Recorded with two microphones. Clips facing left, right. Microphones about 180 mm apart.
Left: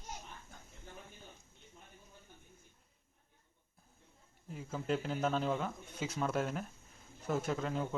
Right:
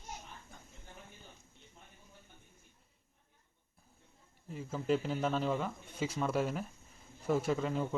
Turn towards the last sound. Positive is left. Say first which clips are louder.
# right 3 dB
turn(degrees=0)  # may be behind; listen again after turning